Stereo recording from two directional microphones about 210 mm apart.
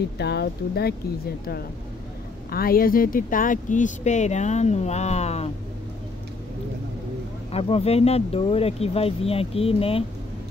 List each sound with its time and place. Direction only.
0.2 s speech: 50° left (ahead or behind)
2.5 s speech: 45° left (ahead or behind)
7.5 s speech: 30° left (ahead or behind)